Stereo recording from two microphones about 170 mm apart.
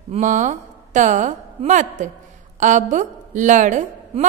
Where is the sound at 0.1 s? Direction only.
45° right (ahead or behind).